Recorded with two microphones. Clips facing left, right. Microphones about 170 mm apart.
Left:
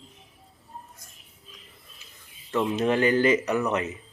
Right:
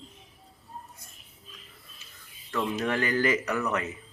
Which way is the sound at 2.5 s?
20° left (ahead or behind).